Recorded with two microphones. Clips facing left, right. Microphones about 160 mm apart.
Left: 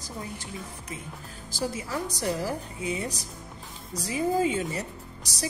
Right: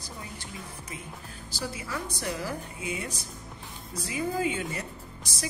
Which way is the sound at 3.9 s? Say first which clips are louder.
Left 4 dB; 40° left (ahead or behind).